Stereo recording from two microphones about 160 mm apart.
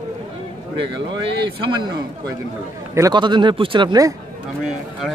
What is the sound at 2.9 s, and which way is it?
A man's voice, 25° right (ahead or behind).